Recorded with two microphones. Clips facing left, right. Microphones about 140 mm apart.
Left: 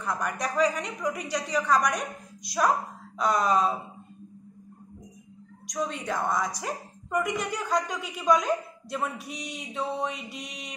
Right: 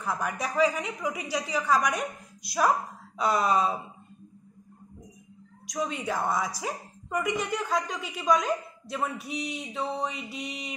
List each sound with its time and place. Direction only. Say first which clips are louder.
0.0 s a woman's voice: left 1 dB; 5° right (ahead or behind)
3.2 s a woman's voice: left 1 dB; 5° right (ahead or behind)
5.7 s a woman's voice: even; centre (ahead or behind)